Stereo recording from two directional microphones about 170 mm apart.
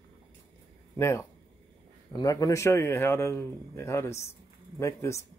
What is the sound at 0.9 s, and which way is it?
A man's voice, 15° left (ahead or behind).